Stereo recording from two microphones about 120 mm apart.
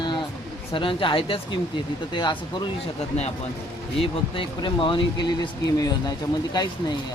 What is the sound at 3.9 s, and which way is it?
Speech, 45° left (ahead or behind).